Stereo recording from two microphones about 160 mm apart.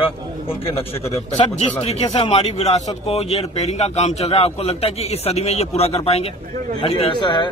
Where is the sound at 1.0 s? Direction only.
35° left (ahead or behind).